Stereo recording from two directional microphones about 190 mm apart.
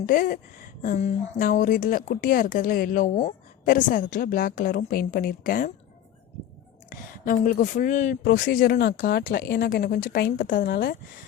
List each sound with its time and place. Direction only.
0.0 s speech: 50° left (ahead or behind)
7.3 s speech: 45° left (ahead or behind)